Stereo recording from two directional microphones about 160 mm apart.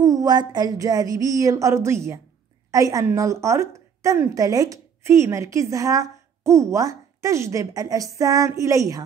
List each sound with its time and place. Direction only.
0.0 s a woman's voice: 25° right (ahead or behind)